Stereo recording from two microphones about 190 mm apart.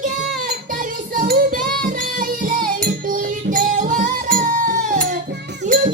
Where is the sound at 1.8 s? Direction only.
45° right (ahead or behind).